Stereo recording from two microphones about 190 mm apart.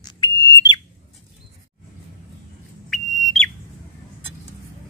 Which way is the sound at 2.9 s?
Centre (ahead or behind).